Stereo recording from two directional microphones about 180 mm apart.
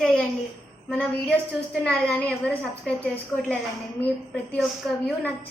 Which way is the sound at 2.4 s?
5° left (ahead or behind).